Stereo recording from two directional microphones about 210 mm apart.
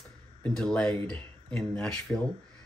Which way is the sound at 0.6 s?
5° left (ahead or behind).